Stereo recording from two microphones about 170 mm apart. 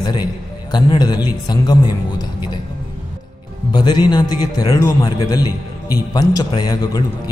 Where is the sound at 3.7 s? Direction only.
25° left (ahead or behind).